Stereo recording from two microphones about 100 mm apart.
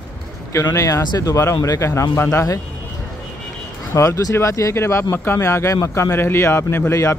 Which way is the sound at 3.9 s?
30° left (ahead or behind).